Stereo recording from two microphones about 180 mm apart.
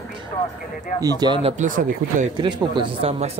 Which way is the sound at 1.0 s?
25° right (ahead or behind).